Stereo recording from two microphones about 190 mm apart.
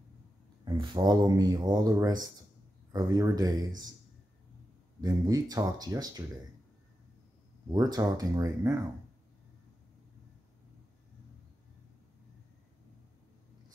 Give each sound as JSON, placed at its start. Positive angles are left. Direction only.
{"t": 0.7, "sound": "speech", "side_deg": -20}
{"t": 5.0, "sound": "speech", "side_deg": -20}
{"t": 7.7, "sound": "speech", "side_deg": -20}